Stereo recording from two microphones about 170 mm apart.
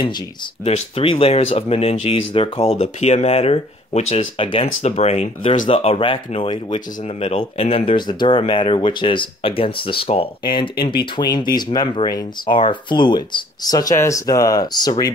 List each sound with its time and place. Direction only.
0.7 s speech: 35° left (ahead or behind)